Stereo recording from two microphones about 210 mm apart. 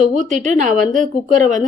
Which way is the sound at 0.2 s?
35° right (ahead or behind).